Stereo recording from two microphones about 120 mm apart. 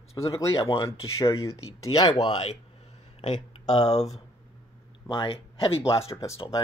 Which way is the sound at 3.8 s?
60° left (ahead or behind).